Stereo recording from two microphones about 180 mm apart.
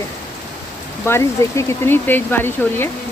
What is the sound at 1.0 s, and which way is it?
Speech, 15° left (ahead or behind).